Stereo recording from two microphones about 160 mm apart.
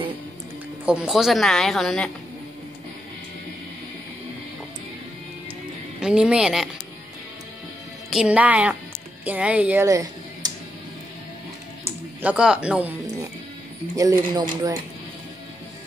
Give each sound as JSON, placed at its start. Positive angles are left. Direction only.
{"t": 0.8, "sound": "a woman's voice", "side_deg": -5}
{"t": 5.9, "sound": "a woman's voice", "side_deg": -5}
{"t": 8.1, "sound": "speech", "side_deg": -5}
{"t": 12.2, "sound": "speech", "side_deg": -10}
{"t": 13.9, "sound": "speech", "side_deg": -20}